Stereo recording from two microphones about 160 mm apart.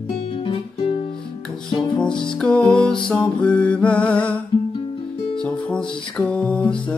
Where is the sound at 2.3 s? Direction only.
5° left (ahead or behind).